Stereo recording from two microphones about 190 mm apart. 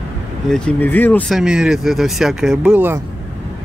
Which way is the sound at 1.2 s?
5° right (ahead or behind).